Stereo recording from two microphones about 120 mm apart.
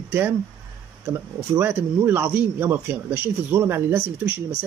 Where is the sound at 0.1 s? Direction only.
15° right (ahead or behind).